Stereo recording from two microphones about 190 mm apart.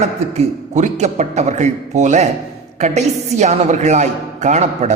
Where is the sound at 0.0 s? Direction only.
35° right (ahead or behind).